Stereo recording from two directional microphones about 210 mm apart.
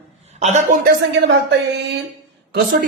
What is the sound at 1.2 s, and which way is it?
Speech, 55° right (ahead or behind).